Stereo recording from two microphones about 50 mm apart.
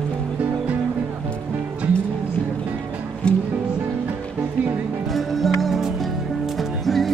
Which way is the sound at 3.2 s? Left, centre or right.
Left.